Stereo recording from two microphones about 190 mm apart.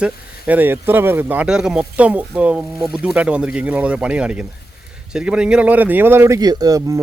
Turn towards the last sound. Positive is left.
turn(degrees=-20)  # may be behind; listen again after turning